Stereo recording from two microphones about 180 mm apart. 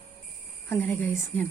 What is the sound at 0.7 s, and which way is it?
Speech, 10° left (ahead or behind).